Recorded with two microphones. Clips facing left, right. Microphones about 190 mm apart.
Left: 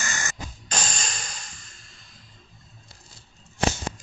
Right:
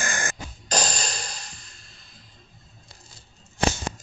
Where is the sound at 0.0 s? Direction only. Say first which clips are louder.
Right 4 dB; 55° right (ahead or behind).